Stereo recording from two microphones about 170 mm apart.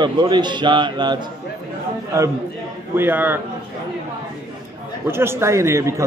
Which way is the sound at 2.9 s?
10° right (ahead or behind).